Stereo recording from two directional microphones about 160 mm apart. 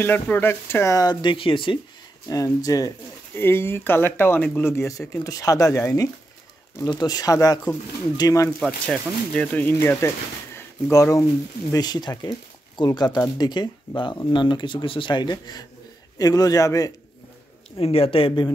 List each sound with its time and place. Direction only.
0.0 s speech: 10° left (ahead or behind); by 1.8 s 30° left (ahead or behind)
2.2 s speech: 20° left (ahead or behind)
8.5 s speech: 5° left (ahead or behind); by 16.9 s 20° left (ahead or behind)
17.7 s speech: 35° left (ahead or behind)